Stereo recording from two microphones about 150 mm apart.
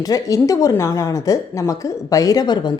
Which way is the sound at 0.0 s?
25° left (ahead or behind).